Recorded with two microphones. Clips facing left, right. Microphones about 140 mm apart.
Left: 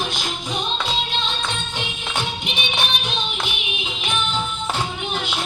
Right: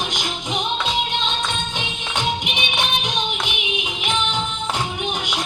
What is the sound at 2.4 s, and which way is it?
Music, 15° right (ahead or behind).